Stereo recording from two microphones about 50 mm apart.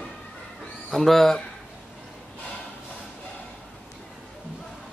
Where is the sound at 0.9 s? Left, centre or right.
Centre.